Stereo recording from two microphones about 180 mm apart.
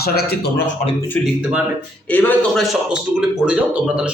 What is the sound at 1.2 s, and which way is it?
Speech, 5° right (ahead or behind).